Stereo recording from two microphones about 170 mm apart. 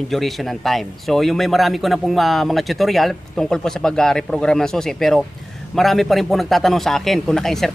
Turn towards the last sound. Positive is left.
turn(degrees=0)  # may be behind; listen again after turning